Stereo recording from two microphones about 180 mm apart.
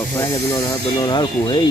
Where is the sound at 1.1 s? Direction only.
25° left (ahead or behind).